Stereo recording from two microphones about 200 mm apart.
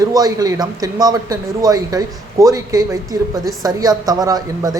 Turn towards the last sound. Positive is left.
turn(degrees=-20)  # may be behind; listen again after turning